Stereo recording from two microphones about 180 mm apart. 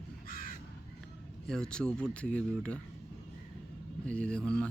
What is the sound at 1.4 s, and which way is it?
Speech, 5° left (ahead or behind).